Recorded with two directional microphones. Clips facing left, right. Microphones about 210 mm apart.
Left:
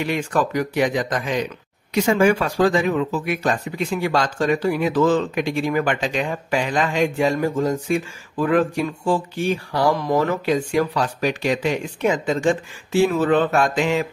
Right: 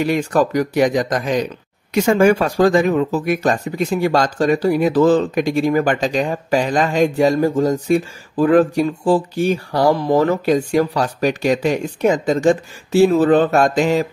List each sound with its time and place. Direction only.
0.0 s speech: 40° right (ahead or behind)